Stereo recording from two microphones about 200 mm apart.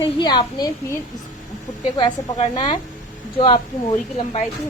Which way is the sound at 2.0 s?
30° left (ahead or behind).